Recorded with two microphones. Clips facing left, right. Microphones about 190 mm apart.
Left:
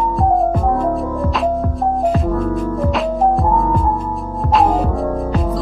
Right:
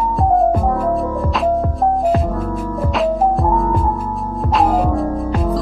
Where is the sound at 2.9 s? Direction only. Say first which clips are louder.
Right 2 dB; centre (ahead or behind).